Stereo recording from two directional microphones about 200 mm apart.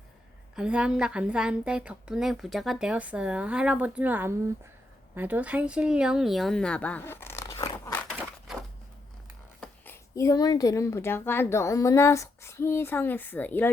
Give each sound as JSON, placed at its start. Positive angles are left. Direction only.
{"t": 0.5, "sound": "a woman's voice", "side_deg": -5}
{"t": 8.1, "sound": "a sound", "side_deg": -5}
{"t": 9.6, "sound": "speech", "side_deg": 10}